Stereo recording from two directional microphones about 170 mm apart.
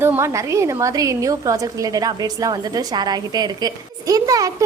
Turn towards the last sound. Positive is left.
turn(degrees=-20)  # may be behind; listen again after turning